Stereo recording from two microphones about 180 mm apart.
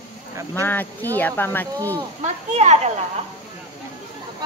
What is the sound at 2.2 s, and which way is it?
Speech, 40° right (ahead or behind).